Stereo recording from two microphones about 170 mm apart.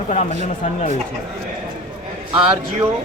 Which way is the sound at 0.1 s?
40° left (ahead or behind).